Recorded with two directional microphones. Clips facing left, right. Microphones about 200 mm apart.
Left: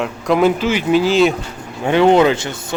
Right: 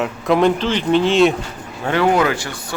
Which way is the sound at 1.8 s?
20° left (ahead or behind).